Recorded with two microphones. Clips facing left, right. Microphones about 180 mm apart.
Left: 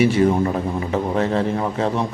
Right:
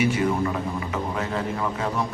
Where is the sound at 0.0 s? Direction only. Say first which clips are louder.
Left 6 dB; 30° left (ahead or behind).